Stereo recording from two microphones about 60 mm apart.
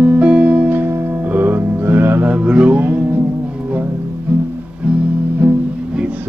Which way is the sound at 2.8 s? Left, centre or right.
Right.